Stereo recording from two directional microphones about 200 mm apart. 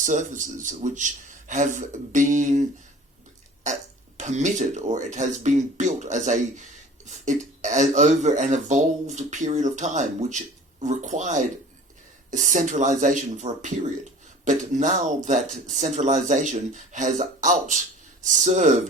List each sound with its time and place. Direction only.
0.0 s speech: 40° right (ahead or behind)
4.2 s speech: 35° right (ahead or behind)